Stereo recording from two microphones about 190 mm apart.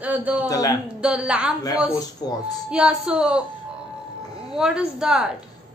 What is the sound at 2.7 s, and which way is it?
Speech, 5° right (ahead or behind).